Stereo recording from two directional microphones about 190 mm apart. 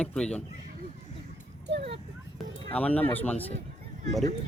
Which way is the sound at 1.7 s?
65° right (ahead or behind).